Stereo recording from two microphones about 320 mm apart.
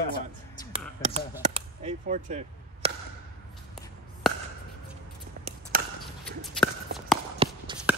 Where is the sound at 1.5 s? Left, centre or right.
Centre.